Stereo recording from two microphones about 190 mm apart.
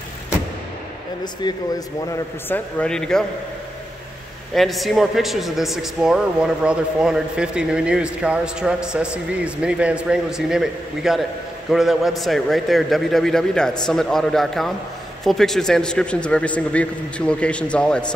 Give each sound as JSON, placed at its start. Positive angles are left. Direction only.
{"t": 1.4, "sound": "speech", "side_deg": 20}
{"t": 2.5, "sound": "a man's voice", "side_deg": 5}
{"t": 4.6, "sound": "a man's voice", "side_deg": 0}